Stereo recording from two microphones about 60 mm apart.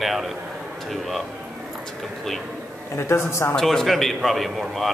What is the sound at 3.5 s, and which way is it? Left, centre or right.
Speech, centre.